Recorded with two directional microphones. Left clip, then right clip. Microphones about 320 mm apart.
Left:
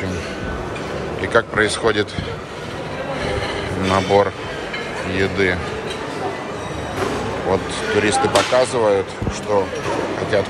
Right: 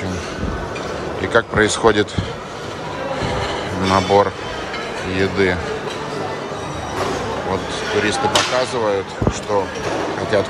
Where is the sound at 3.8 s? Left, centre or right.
Centre.